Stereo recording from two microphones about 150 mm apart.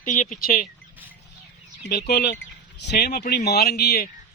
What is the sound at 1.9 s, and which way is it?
Speech, 90° left.